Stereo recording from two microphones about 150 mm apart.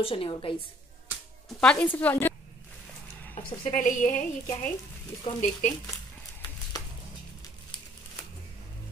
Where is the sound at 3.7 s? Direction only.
60° left (ahead or behind).